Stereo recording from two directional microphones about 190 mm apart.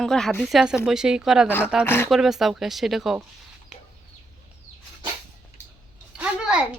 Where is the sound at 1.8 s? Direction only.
10° left (ahead or behind).